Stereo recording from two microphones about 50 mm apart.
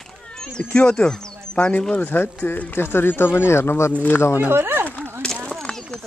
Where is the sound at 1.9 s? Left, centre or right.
Left.